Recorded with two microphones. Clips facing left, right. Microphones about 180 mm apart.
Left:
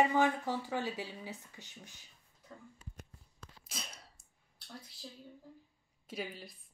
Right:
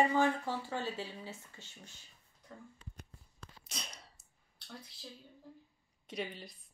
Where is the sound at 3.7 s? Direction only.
5° left (ahead or behind).